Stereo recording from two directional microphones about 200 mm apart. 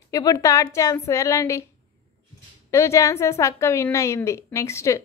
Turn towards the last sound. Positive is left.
turn(degrees=15)  # may be behind; listen again after turning